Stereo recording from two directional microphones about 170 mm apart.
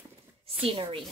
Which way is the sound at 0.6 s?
30° right (ahead or behind).